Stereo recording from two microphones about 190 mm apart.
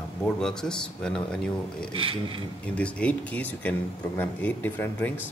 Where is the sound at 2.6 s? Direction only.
5° left (ahead or behind).